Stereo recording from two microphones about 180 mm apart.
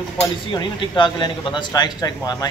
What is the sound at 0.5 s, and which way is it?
Speech, 25° left (ahead or behind).